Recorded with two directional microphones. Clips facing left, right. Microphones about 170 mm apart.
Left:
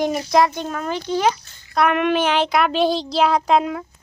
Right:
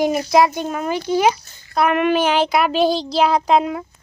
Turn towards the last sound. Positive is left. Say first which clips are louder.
# right 1 dB
turn(degrees=-5)  # may be behind; listen again after turning